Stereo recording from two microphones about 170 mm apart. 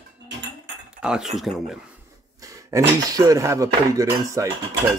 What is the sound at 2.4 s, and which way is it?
Dishes, 20° right (ahead or behind).